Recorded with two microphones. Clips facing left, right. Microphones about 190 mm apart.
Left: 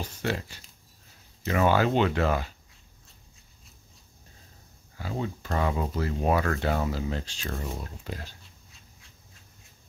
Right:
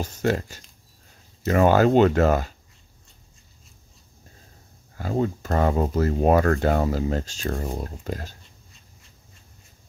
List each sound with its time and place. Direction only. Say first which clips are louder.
0.0 s speech: right 7 dB; 45° right (ahead or behind)
4.9 s speech: right 8 dB; 45° right (ahead or behind)